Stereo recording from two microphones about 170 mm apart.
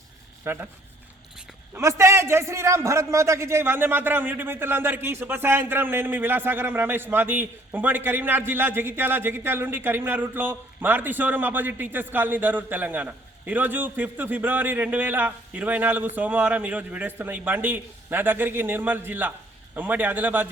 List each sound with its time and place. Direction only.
0.4 s a man's voice: 15° right (ahead or behind)